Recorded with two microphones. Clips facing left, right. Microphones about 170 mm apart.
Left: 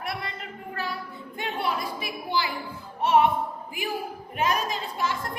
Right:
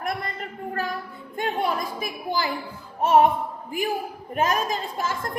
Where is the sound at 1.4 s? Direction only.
45° right (ahead or behind).